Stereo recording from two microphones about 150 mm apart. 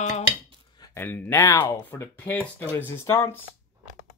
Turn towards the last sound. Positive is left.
turn(degrees=20)  # may be behind; listen again after turning